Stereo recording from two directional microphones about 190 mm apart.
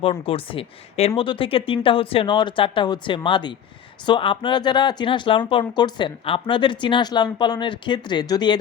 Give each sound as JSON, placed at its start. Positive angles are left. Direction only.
{"t": 0.0, "sound": "speech", "side_deg": 30}